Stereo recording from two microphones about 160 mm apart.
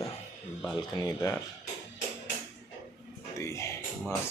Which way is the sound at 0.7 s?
20° left (ahead or behind).